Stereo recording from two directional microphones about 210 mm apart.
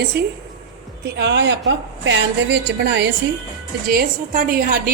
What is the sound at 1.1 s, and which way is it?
A woman's voice, 55° right (ahead or behind).